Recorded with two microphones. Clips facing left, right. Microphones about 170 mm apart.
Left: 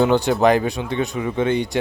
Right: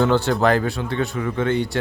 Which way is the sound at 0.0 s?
15° left (ahead or behind).